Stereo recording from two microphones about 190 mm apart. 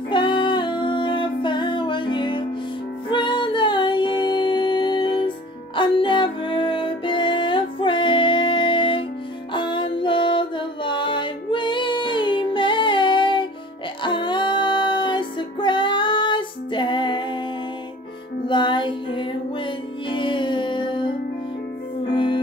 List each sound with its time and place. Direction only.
0.1 s music: 25° left (ahead or behind)
18.5 s music: 25° left (ahead or behind)
22.1 s music: 25° left (ahead or behind)